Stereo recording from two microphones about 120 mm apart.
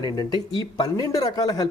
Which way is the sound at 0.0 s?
35° left (ahead or behind).